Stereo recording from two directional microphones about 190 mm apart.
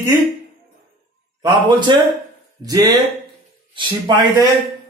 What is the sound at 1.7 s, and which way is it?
Speech, 25° right (ahead or behind).